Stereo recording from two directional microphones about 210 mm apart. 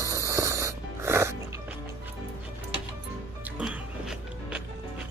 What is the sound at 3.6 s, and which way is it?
Music, 5° right (ahead or behind).